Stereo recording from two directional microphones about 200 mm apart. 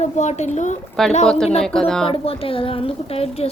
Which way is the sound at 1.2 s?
5° left (ahead or behind).